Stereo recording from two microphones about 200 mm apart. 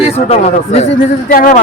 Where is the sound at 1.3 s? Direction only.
45° left (ahead or behind).